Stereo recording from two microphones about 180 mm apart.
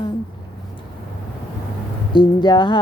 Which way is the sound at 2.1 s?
25° left (ahead or behind).